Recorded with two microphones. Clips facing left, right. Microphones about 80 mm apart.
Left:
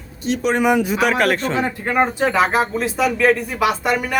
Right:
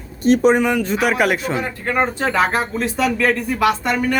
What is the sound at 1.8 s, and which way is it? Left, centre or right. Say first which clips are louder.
Speech: left 1 dB; centre.